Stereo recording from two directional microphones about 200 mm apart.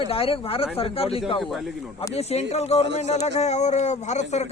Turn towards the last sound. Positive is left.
turn(degrees=35)  # may be behind; listen again after turning